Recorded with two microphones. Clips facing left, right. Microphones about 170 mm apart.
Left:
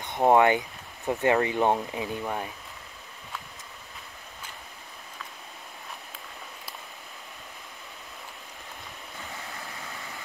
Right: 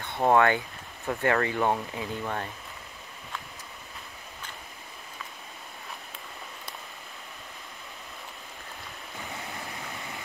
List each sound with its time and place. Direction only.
0.0 s speech: 15° left (ahead or behind)
9.3 s waterfall: 20° right (ahead or behind)